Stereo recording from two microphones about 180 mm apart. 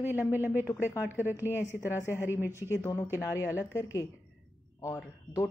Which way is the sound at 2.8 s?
15° left (ahead or behind).